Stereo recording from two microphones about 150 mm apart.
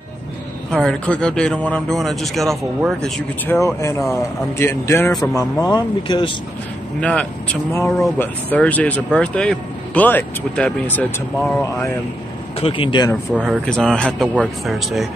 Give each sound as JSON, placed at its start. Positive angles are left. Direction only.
{"t": 0.7, "sound": "speech", "side_deg": 5}
{"t": 3.4, "sound": "speech", "side_deg": 20}
{"t": 7.0, "sound": "speech", "side_deg": 10}
{"t": 12.5, "sound": "speech", "side_deg": 35}
{"t": 13.4, "sound": "speech", "side_deg": 5}